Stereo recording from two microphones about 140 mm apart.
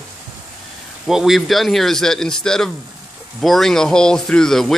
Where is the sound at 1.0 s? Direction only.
Centre (ahead or behind).